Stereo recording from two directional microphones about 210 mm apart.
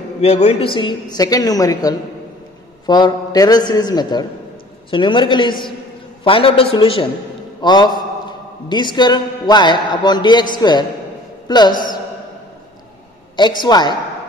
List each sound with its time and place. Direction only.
0.2 s a man's voice: 30° left (ahead or behind)
13.4 s a man's voice: 20° left (ahead or behind)